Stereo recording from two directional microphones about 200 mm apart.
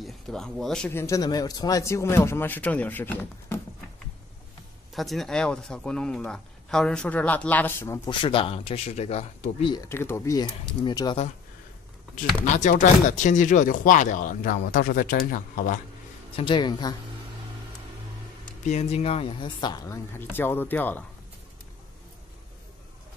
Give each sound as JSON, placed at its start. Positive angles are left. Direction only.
{"t": 0.0, "sound": "speech", "side_deg": 0}
{"t": 4.9, "sound": "speech", "side_deg": 0}
{"t": 8.1, "sound": "speech", "side_deg": 25}
{"t": 12.4, "sound": "speech", "side_deg": 40}
{"t": 16.3, "sound": "speech", "side_deg": 25}
{"t": 18.6, "sound": "speech", "side_deg": 35}